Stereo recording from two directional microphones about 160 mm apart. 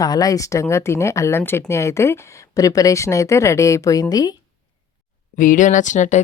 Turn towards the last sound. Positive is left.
turn(degrees=50)  # may be behind; listen again after turning